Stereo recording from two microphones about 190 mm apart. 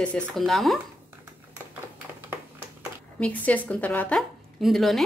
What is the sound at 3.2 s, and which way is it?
A woman's voice, 5° left (ahead or behind).